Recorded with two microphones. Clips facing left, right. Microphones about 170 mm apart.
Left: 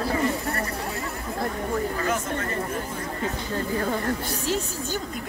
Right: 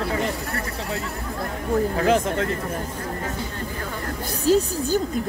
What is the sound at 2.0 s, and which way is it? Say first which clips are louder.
Speech: right 7 dB; 90° right.